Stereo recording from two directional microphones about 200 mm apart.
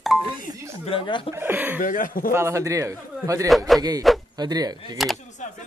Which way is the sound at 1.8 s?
45° left (ahead or behind).